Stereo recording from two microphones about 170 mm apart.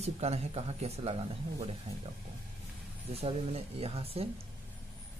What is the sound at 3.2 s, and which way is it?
Speech, 35° right (ahead or behind).